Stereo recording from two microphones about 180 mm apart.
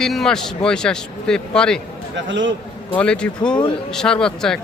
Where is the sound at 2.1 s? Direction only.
90° right.